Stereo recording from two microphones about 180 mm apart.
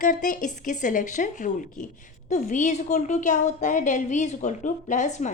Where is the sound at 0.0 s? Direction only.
50° left (ahead or behind).